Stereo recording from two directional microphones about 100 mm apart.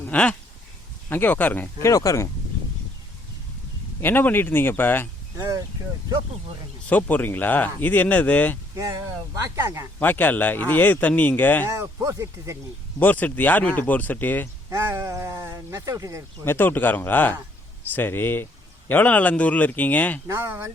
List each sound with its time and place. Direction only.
0.1 s a sound: 15° left (ahead or behind)
1.1 s speech: 20° left (ahead or behind)
1.8 s speech: 35° left (ahead or behind)
4.0 s speech: 20° left (ahead or behind)
6.8 s speech: 15° left (ahead or behind)
8.7 s speech: 35° right (ahead or behind)
10.0 s speech: 20° left (ahead or behind)
11.7 s speech: 30° right (ahead or behind)
13.0 s speech: 15° left (ahead or behind)
14.7 s speech: 25° right (ahead or behind)
16.4 s speech: 20° left (ahead or behind)
20.2 s speech: 25° right (ahead or behind)